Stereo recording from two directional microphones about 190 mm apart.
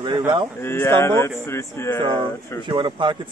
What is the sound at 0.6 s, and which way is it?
Speech, 10° left (ahead or behind).